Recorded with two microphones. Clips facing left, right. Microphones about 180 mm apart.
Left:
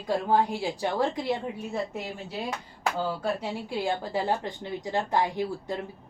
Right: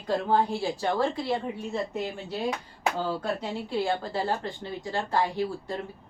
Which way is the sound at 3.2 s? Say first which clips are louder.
Left 1 dB; 10° left (ahead or behind).